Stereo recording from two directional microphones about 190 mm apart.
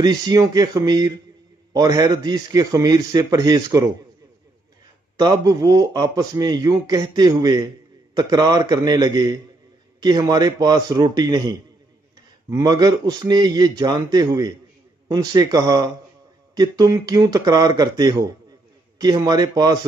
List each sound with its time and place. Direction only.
0.0 s a man's voice: 20° right (ahead or behind)
5.2 s a man's voice: 20° right (ahead or behind)